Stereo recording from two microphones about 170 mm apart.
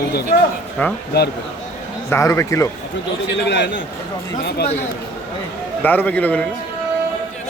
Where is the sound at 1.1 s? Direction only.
70° left (ahead or behind).